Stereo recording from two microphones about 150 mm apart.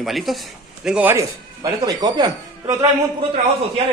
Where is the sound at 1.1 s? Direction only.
25° right (ahead or behind).